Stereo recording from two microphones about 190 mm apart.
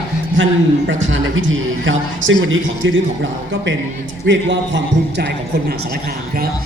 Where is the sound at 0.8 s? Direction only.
90° right.